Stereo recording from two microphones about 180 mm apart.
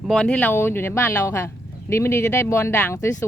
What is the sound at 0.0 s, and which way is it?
Speech, 5° left (ahead or behind).